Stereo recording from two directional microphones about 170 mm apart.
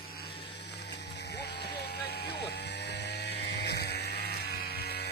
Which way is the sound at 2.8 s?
80° left.